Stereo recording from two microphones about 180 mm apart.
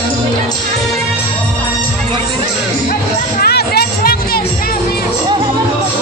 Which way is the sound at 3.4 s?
60° left (ahead or behind).